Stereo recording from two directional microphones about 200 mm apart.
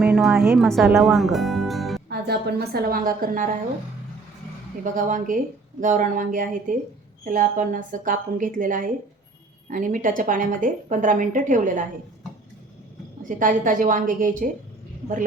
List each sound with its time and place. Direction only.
0.0 s a sound: centre (ahead or behind)
0.5 s speech: centre (ahead or behind)
2.0 s a woman's voice: 55° right (ahead or behind)
4.8 s a woman's voice: 40° right (ahead or behind)
13.2 s a woman's voice: 40° right (ahead or behind)